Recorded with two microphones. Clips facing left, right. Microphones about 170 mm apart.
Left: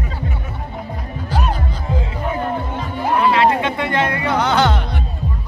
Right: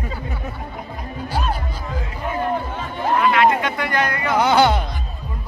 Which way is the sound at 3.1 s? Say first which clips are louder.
Left 1 dB; 30° left (ahead or behind).